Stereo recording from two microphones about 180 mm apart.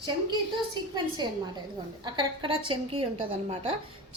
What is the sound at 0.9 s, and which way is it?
A woman's voice, 25° right (ahead or behind).